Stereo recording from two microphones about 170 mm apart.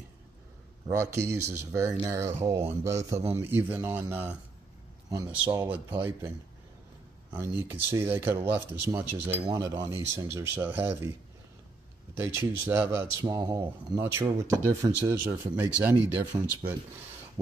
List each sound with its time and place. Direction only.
0.8 s speech: 15° right (ahead or behind)
5.7 s speech: 10° right (ahead or behind)
7.3 s speech: 15° right (ahead or behind)
12.2 s speech: 15° right (ahead or behind)
16.3 s speech: 25° right (ahead or behind)